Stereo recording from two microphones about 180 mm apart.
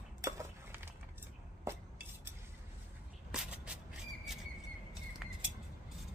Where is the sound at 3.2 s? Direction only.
5° right (ahead or behind).